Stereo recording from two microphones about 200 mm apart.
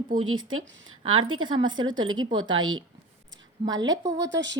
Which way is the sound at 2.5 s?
85° right.